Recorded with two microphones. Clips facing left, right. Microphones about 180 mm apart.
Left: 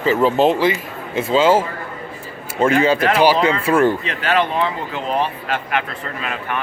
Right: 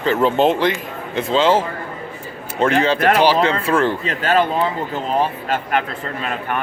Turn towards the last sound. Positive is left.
turn(degrees=-40)  # may be behind; listen again after turning